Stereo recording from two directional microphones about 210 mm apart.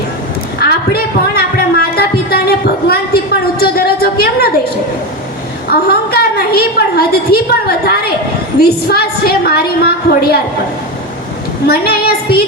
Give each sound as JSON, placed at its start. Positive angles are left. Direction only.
{"t": 0.6, "sound": "a sound", "side_deg": 45}
{"t": 5.7, "sound": "a woman's voice", "side_deg": 45}
{"t": 11.6, "sound": "a woman's voice", "side_deg": 45}